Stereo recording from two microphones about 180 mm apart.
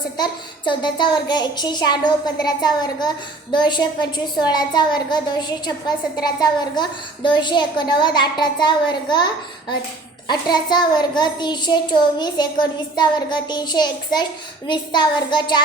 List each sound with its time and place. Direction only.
0.2 s a child's voice: 25° left (ahead or behind)